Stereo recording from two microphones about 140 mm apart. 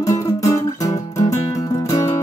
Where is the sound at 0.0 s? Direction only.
25° left (ahead or behind).